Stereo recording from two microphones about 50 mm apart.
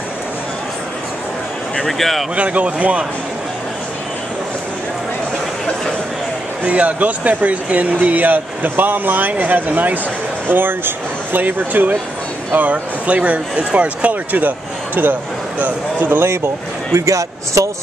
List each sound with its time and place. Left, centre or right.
1.9 s speech: centre
2.3 s speech: right
6.6 s speech: right
10.5 s speech: right
15.6 s speech: right
16.9 s speech: right